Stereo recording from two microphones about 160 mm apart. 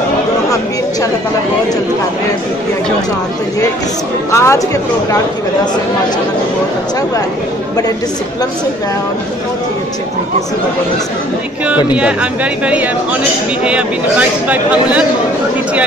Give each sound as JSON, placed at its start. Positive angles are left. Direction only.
{"t": 4.3, "sound": "speech", "side_deg": 20}
{"t": 11.6, "sound": "speech", "side_deg": -10}